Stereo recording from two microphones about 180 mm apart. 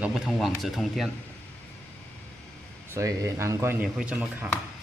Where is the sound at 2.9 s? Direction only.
15° right (ahead or behind).